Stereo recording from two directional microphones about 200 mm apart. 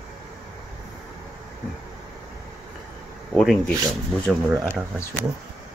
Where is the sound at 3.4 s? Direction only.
5° left (ahead or behind).